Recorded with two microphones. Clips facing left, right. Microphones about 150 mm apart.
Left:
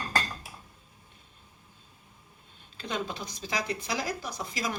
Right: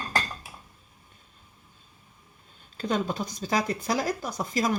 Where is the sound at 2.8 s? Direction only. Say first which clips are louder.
Right 6 dB; 45° right (ahead or behind).